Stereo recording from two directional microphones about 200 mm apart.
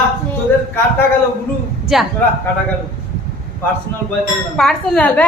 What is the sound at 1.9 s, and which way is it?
Speech, centre (ahead or behind).